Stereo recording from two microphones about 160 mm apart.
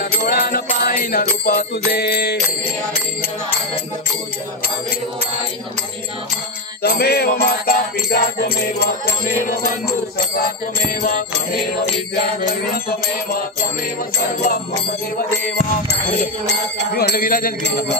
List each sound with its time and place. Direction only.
0.3 s music: 70° left (ahead or behind)
1.9 s jingle bell: 85° left
6.8 s jingle bell: 80° left
9.6 s music: 75° left (ahead or behind)
16.7 s bell: 80° left; by 17.9 s 65° left (ahead or behind)